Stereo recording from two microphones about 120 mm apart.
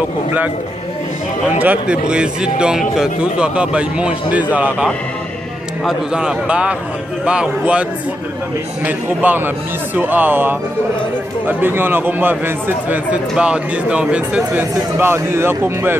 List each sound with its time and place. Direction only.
1.6 s a man's voice: 10° right (ahead or behind)
5.9 s a man's voice: 5° right (ahead or behind)
8.8 s a man's voice: 15° right (ahead or behind)